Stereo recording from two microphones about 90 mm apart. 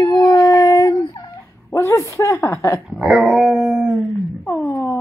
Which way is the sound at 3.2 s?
10° right (ahead or behind).